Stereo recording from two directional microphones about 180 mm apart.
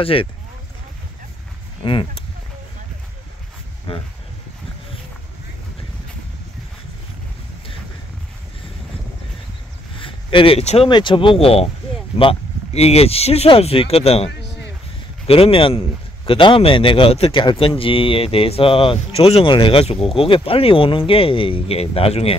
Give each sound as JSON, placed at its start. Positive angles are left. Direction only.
{"t": 0.0, "sound": "speech", "side_deg": 30}
{"t": 1.8, "sound": "speech", "side_deg": 30}
{"t": 3.9, "sound": "speech", "side_deg": 30}
{"t": 9.9, "sound": "a sound", "side_deg": 30}
{"t": 10.9, "sound": "speech", "side_deg": 25}